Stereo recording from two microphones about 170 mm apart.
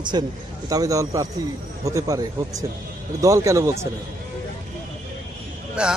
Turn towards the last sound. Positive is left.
turn(degrees=-5)  # may be behind; listen again after turning